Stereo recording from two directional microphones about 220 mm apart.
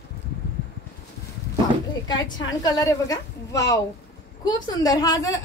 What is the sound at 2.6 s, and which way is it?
A woman's voice, 15° left (ahead or behind).